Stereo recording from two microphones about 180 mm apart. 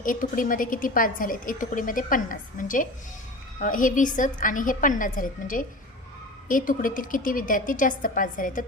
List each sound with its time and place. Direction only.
0.0 s a woman's voice: 50° left (ahead or behind)